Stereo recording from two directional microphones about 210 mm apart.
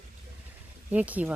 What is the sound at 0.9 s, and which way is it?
Speech, 5° right (ahead or behind).